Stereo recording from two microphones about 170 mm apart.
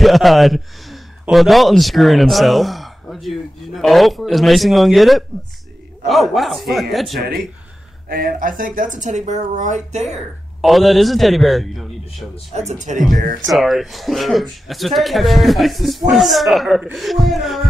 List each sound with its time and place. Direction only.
0.0 s speech: centre (ahead or behind)
8.1 s speech: 55° right (ahead or behind)
10.6 s speech: centre (ahead or behind)
12.9 s speech: 45° right (ahead or behind)
13.5 s speech: centre (ahead or behind)